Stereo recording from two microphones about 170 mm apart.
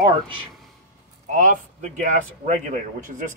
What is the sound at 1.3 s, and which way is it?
Speech, 50° right (ahead or behind).